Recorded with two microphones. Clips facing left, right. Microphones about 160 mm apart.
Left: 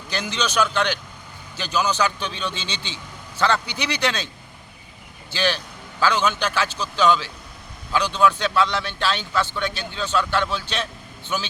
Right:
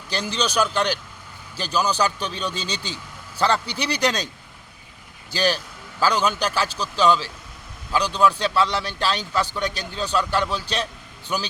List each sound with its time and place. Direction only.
0.1 s a man's voice: 35° right (ahead or behind)
5.3 s a man's voice: 40° right (ahead or behind)
7.9 s a man's voice: 35° right (ahead or behind)